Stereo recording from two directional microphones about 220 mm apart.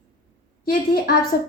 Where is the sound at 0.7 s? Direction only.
40° left (ahead or behind).